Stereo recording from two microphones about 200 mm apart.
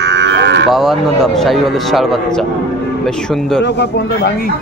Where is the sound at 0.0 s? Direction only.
60° right (ahead or behind).